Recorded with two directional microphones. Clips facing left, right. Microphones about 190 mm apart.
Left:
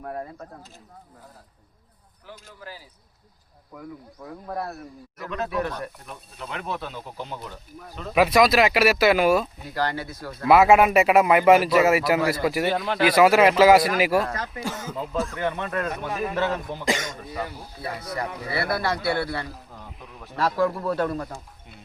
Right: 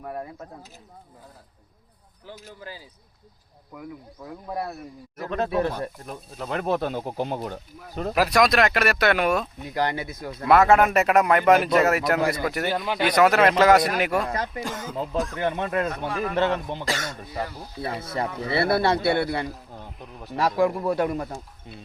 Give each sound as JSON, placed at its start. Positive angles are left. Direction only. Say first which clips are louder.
{"t": 0.0, "sound": "speech", "louder": "even", "side_deg": -5}
{"t": 4.4, "sound": "speech", "louder": "right 1 dB", "side_deg": -15}
{"t": 5.3, "sound": "speech", "louder": "right 3 dB", "side_deg": -30}
{"t": 6.4, "sound": "speech", "louder": "right 7 dB", "side_deg": -45}
{"t": 8.1, "sound": "speech", "louder": "left 2 dB", "side_deg": 0}
{"t": 9.7, "sound": "speech", "louder": "right 1 dB", "side_deg": -20}
{"t": 10.5, "sound": "speech", "louder": "left 1 dB", "side_deg": 10}
{"t": 15.4, "sound": "speech", "louder": "right 2 dB", "side_deg": -20}
{"t": 16.8, "sound": "speech", "louder": "left 3 dB", "side_deg": 15}
{"t": 17.8, "sound": "speech", "louder": "right 2 dB", "side_deg": -25}